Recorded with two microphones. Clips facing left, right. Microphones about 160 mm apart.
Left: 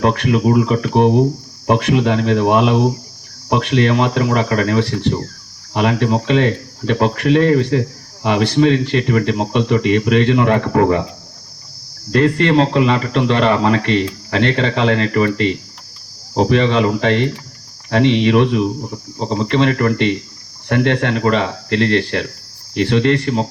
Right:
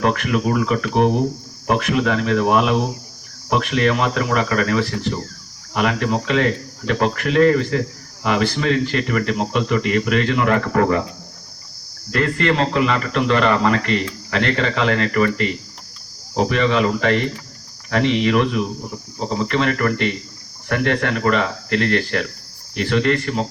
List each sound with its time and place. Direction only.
0.0 s speech: 30° left (ahead or behind)
12.1 s speech: 30° left (ahead or behind)